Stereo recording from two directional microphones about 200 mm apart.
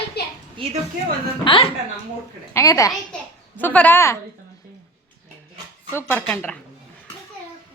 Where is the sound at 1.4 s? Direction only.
25° left (ahead or behind).